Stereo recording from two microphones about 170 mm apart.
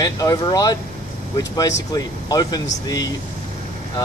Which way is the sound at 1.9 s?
20° left (ahead or behind).